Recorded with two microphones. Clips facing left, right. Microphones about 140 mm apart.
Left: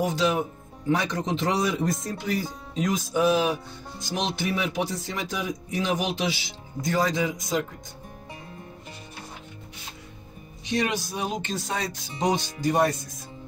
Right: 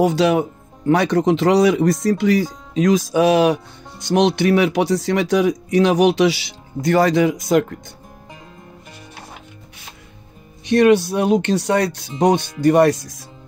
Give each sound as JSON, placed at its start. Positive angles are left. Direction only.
{"t": 0.0, "sound": "speech", "side_deg": -70}
{"t": 10.6, "sound": "speech", "side_deg": -60}